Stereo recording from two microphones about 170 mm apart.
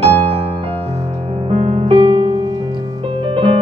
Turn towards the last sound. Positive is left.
turn(degrees=-30)  # may be behind; listen again after turning